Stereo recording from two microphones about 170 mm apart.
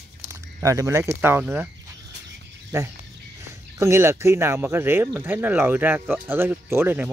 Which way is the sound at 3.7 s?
15° right (ahead or behind).